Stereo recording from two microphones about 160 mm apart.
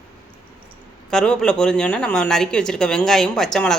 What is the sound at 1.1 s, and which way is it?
Speech, 5° left (ahead or behind).